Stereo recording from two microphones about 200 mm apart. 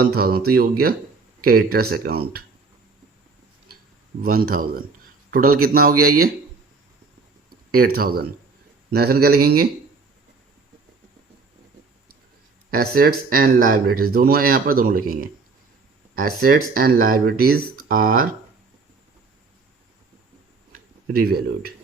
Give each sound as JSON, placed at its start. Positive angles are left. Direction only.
{"t": 0.0, "sound": "speech", "side_deg": -50}
{"t": 4.2, "sound": "a man's voice", "side_deg": -45}
{"t": 5.9, "sound": "speech", "side_deg": -90}
{"t": 7.7, "sound": "speech", "side_deg": -50}
{"t": 12.7, "sound": "speech", "side_deg": -50}
{"t": 16.1, "sound": "speech", "side_deg": -45}
{"t": 21.1, "sound": "speech", "side_deg": -50}